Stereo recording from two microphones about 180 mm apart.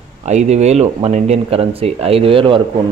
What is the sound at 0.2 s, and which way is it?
Speech, 40° right (ahead or behind).